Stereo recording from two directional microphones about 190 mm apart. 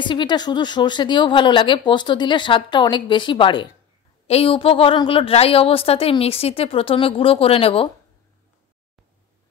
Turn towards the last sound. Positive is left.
turn(degrees=30)  # may be behind; listen again after turning